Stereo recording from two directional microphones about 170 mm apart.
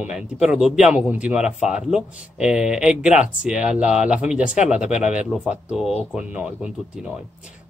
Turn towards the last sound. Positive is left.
turn(degrees=-5)  # may be behind; listen again after turning